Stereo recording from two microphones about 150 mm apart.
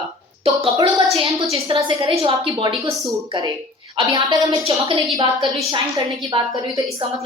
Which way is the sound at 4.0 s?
25° right (ahead or behind).